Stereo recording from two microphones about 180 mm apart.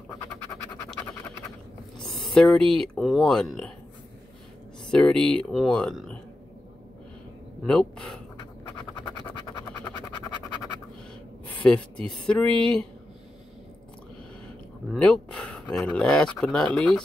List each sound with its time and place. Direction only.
2.0 s speech: centre (ahead or behind)
4.9 s speech: 5° left (ahead or behind)
7.6 s speech: 5° left (ahead or behind)
11.6 s speech: 5° left (ahead or behind)
14.9 s speech: 5° left (ahead or behind)